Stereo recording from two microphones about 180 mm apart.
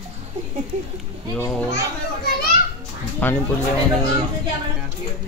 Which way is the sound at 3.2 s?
10° left (ahead or behind).